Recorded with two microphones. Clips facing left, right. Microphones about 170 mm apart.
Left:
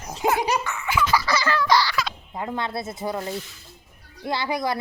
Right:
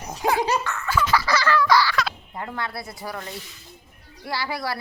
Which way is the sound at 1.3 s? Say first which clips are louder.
Right 4 dB; 20° left (ahead or behind).